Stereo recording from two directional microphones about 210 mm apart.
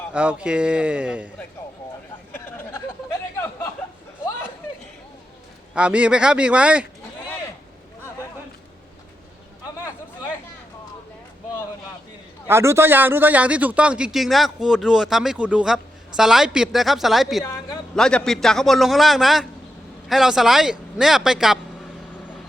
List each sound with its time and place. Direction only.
0.1 s a man's voice: 5° right (ahead or behind)
2.3 s a sound: 10° left (ahead or behind)
5.7 s a man's voice: 5° right (ahead or behind)
12.5 s a man's voice: 10° right (ahead or behind)
17.4 s a sound: 20° left (ahead or behind)
17.9 s a man's voice: 5° left (ahead or behind)